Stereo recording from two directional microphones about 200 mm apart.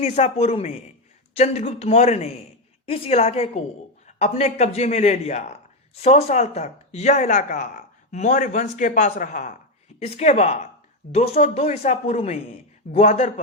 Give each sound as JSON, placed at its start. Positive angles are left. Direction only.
{"t": 0.0, "sound": "a man's voice", "side_deg": 35}